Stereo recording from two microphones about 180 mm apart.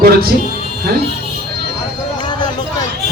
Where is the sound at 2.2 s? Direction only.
25° left (ahead or behind).